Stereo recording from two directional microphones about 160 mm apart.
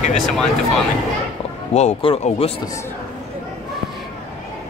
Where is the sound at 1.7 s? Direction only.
40° left (ahead or behind).